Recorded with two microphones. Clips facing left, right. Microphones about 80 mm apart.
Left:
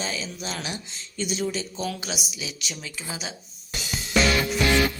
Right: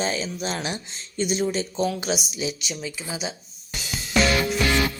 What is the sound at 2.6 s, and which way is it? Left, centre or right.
Speech, centre.